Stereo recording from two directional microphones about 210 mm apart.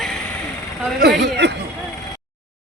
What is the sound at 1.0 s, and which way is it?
Speech, 55° right (ahead or behind).